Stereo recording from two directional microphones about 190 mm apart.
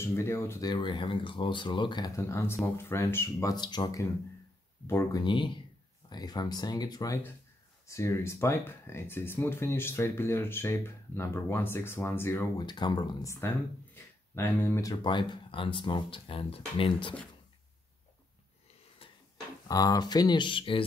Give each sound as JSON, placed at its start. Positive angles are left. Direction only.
{"t": 0.0, "sound": "speech", "side_deg": 15}
{"t": 5.2, "sound": "speech", "side_deg": 25}
{"t": 19.0, "sound": "a sound", "side_deg": 30}
{"t": 19.7, "sound": "speech", "side_deg": 20}